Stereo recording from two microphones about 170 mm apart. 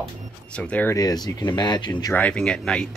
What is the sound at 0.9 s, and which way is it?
Speech, 20° left (ahead or behind).